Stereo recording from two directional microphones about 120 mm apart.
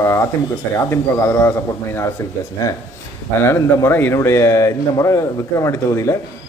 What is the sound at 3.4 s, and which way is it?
Speech, 20° left (ahead or behind).